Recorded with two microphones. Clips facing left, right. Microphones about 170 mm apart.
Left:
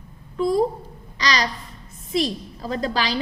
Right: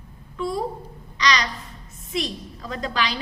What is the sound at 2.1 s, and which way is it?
A woman's voice, 35° left (ahead or behind).